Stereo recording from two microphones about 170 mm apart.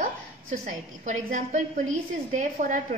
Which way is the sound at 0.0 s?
50° right (ahead or behind).